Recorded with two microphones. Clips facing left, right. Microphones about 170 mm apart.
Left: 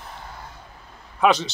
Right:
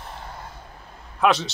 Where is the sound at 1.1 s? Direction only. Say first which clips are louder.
Left 1 dB; centre (ahead or behind).